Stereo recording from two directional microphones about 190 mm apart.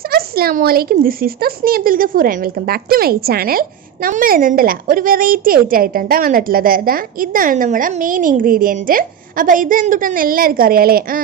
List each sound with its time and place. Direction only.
0.1 s speech: 55° right (ahead or behind)